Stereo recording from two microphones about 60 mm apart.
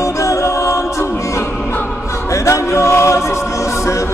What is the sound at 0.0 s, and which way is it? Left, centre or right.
A capella, left.